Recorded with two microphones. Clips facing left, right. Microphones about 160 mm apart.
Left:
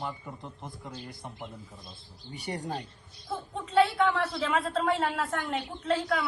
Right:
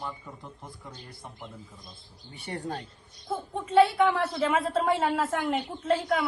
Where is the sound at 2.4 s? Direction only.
15° left (ahead or behind).